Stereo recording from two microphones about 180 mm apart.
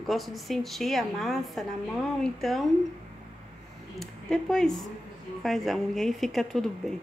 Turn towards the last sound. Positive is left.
turn(degrees=0)  # may be behind; listen again after turning